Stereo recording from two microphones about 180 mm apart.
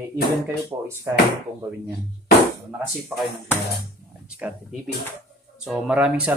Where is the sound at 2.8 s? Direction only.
Centre (ahead or behind).